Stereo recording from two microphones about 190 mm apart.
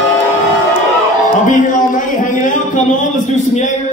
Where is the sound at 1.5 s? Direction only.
45° left (ahead or behind).